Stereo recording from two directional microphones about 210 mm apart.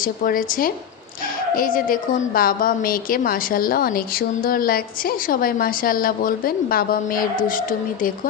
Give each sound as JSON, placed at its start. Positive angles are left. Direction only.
{"t": 0.0, "sound": "a woman's voice", "side_deg": 40}